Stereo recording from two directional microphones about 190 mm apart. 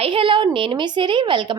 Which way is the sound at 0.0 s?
30° right (ahead or behind).